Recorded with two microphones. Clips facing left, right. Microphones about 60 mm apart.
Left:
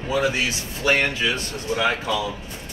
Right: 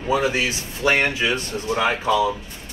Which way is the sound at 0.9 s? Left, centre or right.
Centre.